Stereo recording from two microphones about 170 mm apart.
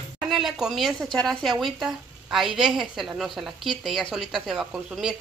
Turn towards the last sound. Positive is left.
turn(degrees=-5)  # may be behind; listen again after turning